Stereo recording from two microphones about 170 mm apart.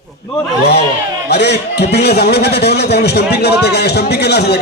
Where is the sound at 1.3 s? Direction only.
75° left (ahead or behind).